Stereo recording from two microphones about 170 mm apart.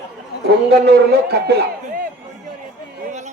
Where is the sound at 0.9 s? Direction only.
70° right (ahead or behind).